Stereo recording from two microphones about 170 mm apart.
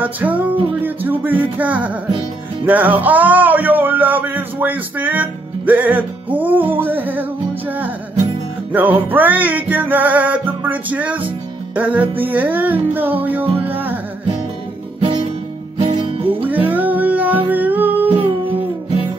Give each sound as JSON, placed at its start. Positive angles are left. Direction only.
{"t": 0.0, "sound": "a man's voice", "side_deg": -10}
{"t": 8.7, "sound": "a man's voice", "side_deg": -10}
{"t": 13.6, "sound": "music", "side_deg": -10}
{"t": 15.0, "sound": "guitar", "side_deg": -30}
{"t": 15.8, "sound": "music", "side_deg": -30}
{"t": 16.4, "sound": "music", "side_deg": -10}